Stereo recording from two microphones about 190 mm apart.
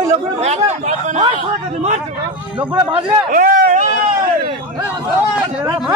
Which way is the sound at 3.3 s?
45° right (ahead or behind).